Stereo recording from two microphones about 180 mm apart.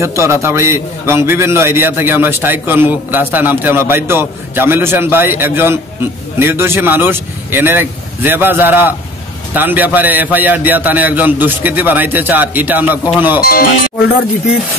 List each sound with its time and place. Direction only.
0.0 s a man's voice: 15° right (ahead or behind)
13.4 s speech: 55° left (ahead or behind)